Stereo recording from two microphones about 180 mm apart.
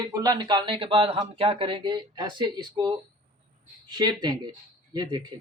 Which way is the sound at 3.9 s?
25° right (ahead or behind).